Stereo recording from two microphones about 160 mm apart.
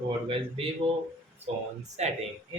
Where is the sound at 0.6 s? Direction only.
30° right (ahead or behind).